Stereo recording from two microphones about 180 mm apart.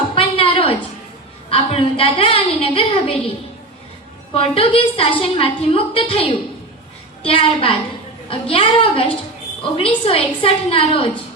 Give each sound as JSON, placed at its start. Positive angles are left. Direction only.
{"t": 0.1, "sound": "a sound", "side_deg": 30}
{"t": 1.5, "sound": "a woman's voice", "side_deg": 30}
{"t": 4.4, "sound": "a woman's voice", "side_deg": 30}
{"t": 7.3, "sound": "a woman's voice", "side_deg": 30}